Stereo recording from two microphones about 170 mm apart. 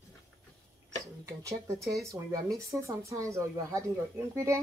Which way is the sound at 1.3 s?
20° right (ahead or behind).